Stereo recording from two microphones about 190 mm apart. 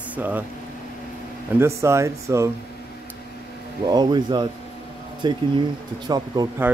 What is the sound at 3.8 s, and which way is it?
Speech, 20° right (ahead or behind).